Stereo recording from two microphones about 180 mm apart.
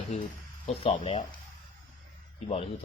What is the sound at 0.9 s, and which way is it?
Speech, 30° left (ahead or behind).